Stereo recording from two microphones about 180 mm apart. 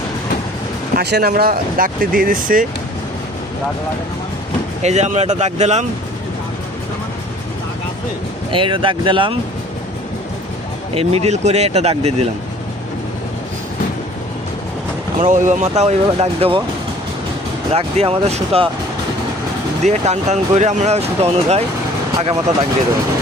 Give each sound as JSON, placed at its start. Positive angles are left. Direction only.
{"t": 0.9, "sound": "speech", "side_deg": -60}
{"t": 4.8, "sound": "speech", "side_deg": -40}
{"t": 8.4, "sound": "speech", "side_deg": -30}
{"t": 10.9, "sound": "speech", "side_deg": -35}
{"t": 15.2, "sound": "speech", "side_deg": -45}
{"t": 17.7, "sound": "speech", "side_deg": -30}
{"t": 19.8, "sound": "speech", "side_deg": -40}